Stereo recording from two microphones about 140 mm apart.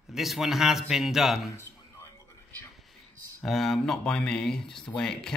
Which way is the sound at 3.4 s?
Centre (ahead or behind).